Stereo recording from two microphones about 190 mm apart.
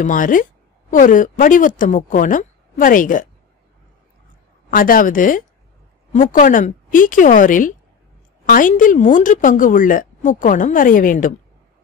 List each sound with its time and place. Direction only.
0.0 s speech: 45° left (ahead or behind)
4.6 s a woman's voice: 50° left (ahead or behind)